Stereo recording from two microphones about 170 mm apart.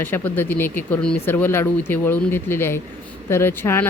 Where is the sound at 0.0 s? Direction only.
10° left (ahead or behind).